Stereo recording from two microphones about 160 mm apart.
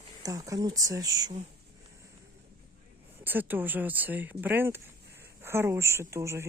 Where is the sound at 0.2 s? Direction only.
20° right (ahead or behind).